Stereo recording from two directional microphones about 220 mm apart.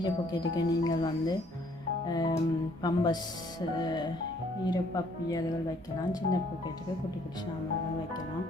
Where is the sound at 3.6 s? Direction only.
15° left (ahead or behind).